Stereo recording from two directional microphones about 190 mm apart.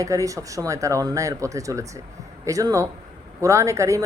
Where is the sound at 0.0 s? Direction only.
15° right (ahead or behind).